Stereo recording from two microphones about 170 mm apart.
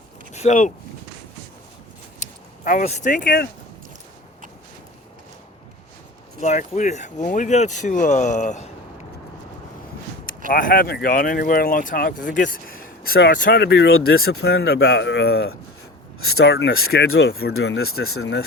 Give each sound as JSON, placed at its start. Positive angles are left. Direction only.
{"t": 0.3, "sound": "speech", "side_deg": 45}
{"t": 2.1, "sound": "speech", "side_deg": 45}
{"t": 6.4, "sound": "speech", "side_deg": 45}
{"t": 10.5, "sound": "speech", "side_deg": 55}
{"t": 13.6, "sound": "speech", "side_deg": 90}
{"t": 16.4, "sound": "speech", "side_deg": 85}